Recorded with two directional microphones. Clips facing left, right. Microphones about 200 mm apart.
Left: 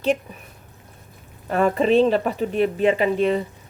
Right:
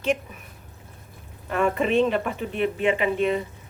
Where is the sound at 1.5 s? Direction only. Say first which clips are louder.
Left 4 dB; 35° left (ahead or behind).